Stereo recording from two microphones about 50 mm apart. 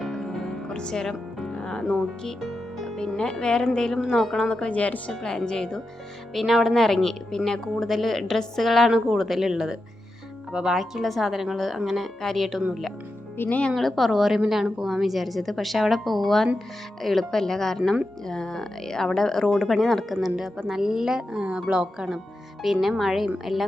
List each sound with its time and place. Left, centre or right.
0.0 s music: centre
0.7 s speech: centre
2.4 s music: centre
3.0 s a woman's voice: centre
4.4 s speech: centre
4.7 s a woman's voice: left
5.5 s speech: centre
6.3 s a woman's voice: centre
13.4 s speech: left
13.7 s a woman's voice: centre
22.6 s a woman's voice: centre